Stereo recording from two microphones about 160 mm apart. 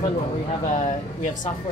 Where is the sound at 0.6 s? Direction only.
50° left (ahead or behind).